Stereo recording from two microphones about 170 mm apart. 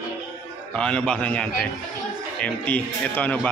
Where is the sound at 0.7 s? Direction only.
5° left (ahead or behind).